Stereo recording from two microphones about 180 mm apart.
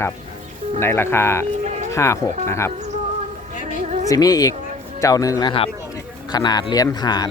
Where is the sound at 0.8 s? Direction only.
15° left (ahead or behind).